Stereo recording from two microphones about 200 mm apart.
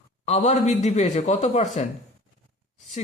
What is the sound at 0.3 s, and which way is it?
Speech, 35° left (ahead or behind).